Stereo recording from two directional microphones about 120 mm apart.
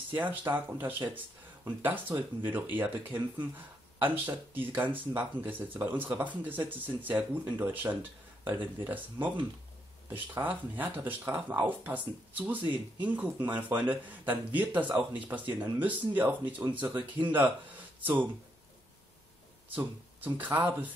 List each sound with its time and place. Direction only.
0.1 s speech: 15° right (ahead or behind)
19.7 s speech: 15° right (ahead or behind)